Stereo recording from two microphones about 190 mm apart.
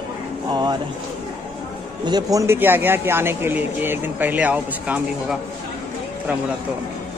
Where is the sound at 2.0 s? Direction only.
20° right (ahead or behind).